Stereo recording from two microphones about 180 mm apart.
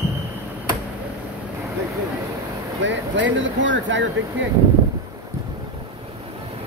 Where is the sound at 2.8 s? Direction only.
90° right.